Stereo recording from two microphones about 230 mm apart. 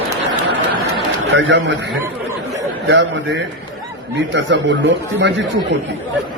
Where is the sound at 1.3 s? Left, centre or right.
Right.